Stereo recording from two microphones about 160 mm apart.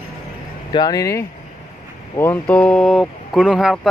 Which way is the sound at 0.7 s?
25° left (ahead or behind).